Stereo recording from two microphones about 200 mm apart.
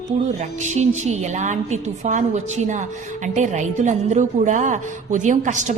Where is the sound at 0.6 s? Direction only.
35° right (ahead or behind).